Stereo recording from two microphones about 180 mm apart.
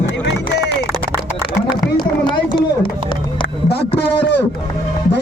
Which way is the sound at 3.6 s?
65° left (ahead or behind).